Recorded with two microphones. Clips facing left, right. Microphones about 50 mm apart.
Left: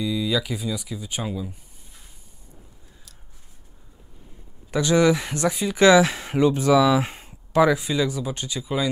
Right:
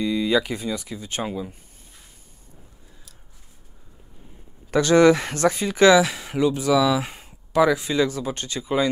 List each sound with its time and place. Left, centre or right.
0.0 s speech: centre
0.4 s speech: centre
1.2 s speech: centre
4.6 s speech: centre
5.8 s speech: left; by 8.1 s centre
8.5 s speech: centre